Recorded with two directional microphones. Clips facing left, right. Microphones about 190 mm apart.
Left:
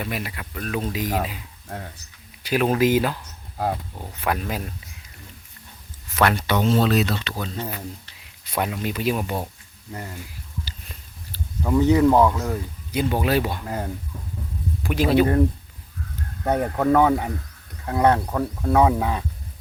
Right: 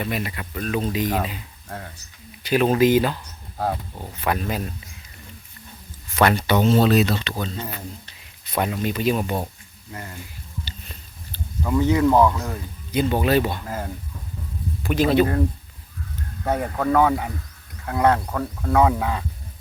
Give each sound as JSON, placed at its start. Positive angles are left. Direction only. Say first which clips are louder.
{"t": 0.0, "sound": "speech", "louder": "right 3 dB", "side_deg": 5}
{"t": 2.4, "sound": "speech", "louder": "right 2 dB", "side_deg": 5}
{"t": 4.2, "sound": "speech", "louder": "right 1 dB", "side_deg": 5}
{"t": 6.1, "sound": "speech", "louder": "right 2 dB", "side_deg": 0}
{"t": 10.7, "sound": "a sound", "louder": "right 1 dB", "side_deg": 5}
{"t": 11.6, "sound": "speech", "louder": "left 2 dB", "side_deg": 20}
{"t": 12.0, "sound": "speech", "louder": "even", "side_deg": 10}
{"t": 14.8, "sound": "speech", "louder": "right 1 dB", "side_deg": 10}
{"t": 16.5, "sound": "speech", "louder": "left 2 dB", "side_deg": 15}